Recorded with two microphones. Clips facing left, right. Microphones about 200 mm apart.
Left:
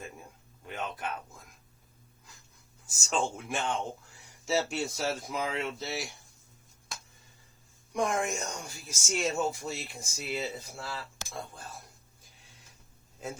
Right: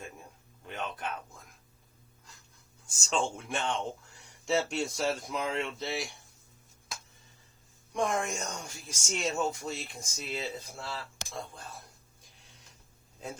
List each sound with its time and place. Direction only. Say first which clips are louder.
0.6 s speech: left 1 dB; 5° left (ahead or behind)
2.8 s speech: even; 5° left (ahead or behind)
7.9 s speech: left 1 dB; 10° left (ahead or behind)
13.1 s a man's voice: left 2 dB; 5° left (ahead or behind)